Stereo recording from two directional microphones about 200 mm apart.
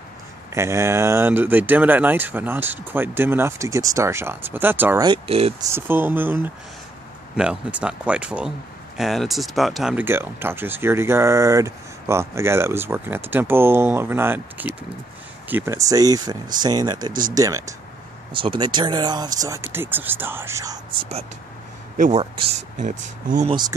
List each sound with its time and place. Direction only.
0.6 s speech: 15° right (ahead or behind)
5.0 s speech: 25° right (ahead or behind)
5.6 s speech: 10° right (ahead or behind); by 21.3 s 25° right (ahead or behind)
21.9 s speech: 40° right (ahead or behind)
22.2 s speech: 25° right (ahead or behind)
22.8 s speech: 40° right (ahead or behind)